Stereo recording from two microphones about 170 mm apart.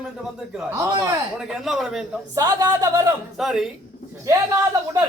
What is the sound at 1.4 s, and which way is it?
Speech, centre (ahead or behind).